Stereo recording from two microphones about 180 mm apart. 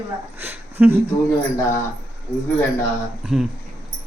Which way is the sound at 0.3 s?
10° right (ahead or behind).